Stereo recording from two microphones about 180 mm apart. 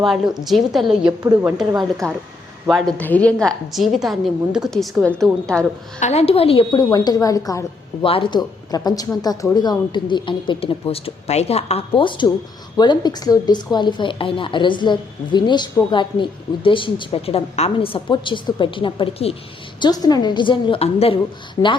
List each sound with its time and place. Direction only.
0.0 s a woman's voice: centre (ahead or behind)
1.2 s a woman's voice: 20° right (ahead or behind)
2.6 s a woman's voice: centre (ahead or behind)
6.0 s speech: 35° left (ahead or behind); by 7.6 s 20° left (ahead or behind)
8.0 s speech: 30° left (ahead or behind)